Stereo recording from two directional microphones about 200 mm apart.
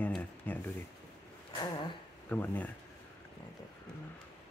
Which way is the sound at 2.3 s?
10° left (ahead or behind).